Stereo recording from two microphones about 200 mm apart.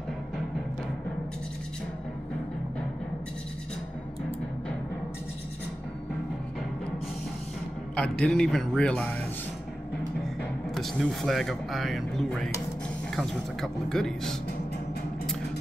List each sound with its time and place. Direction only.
7.9 s speech: 5° left (ahead or behind)
10.7 s speech: centre (ahead or behind)